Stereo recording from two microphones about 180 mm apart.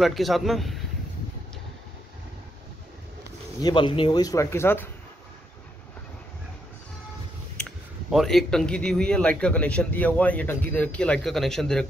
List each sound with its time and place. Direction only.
0.0 s a man's voice: centre (ahead or behind)
3.6 s speech: 25° left (ahead or behind)
8.1 s a man's voice: centre (ahead or behind)